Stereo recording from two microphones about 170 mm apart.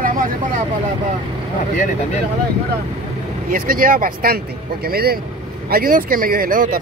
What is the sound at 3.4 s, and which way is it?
Speech, 55° right (ahead or behind).